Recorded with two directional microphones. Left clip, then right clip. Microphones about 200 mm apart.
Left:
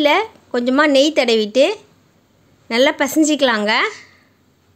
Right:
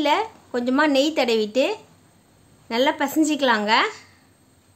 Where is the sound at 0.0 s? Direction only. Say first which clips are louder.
Left 6 dB; 25° left (ahead or behind).